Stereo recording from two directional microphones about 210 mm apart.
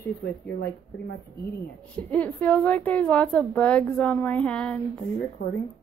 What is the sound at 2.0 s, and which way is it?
A woman's voice, 5° left (ahead or behind).